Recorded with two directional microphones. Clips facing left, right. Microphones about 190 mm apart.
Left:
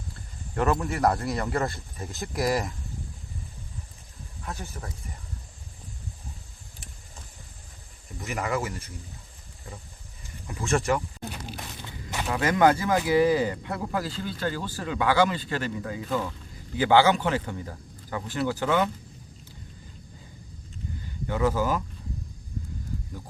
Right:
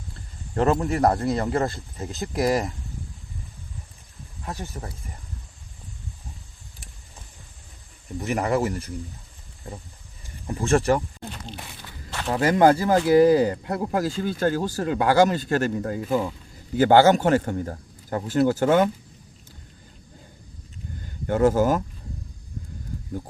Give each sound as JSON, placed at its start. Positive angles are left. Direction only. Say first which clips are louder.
{"t": 0.5, "sound": "a man's voice", "louder": "right 4 dB", "side_deg": -30}
{"t": 2.0, "sound": "speech", "louder": "right 4 dB", "side_deg": -15}
{"t": 4.4, "sound": "speech", "louder": "right 3 dB", "side_deg": -35}
{"t": 8.2, "sound": "a man's voice", "louder": "right 6 dB", "side_deg": -35}
{"t": 11.0, "sound": "speech", "louder": "even", "side_deg": 5}
{"t": 11.8, "sound": "walk", "louder": "left 2 dB", "side_deg": 20}
{"t": 12.3, "sound": "a man's voice", "louder": "right 4 dB", "side_deg": -35}
{"t": 16.0, "sound": "speech", "louder": "right 4 dB", "side_deg": -10}
{"t": 16.7, "sound": "speech", "louder": "right 5 dB", "side_deg": -45}
{"t": 21.2, "sound": "speech", "louder": "right 6 dB", "side_deg": -50}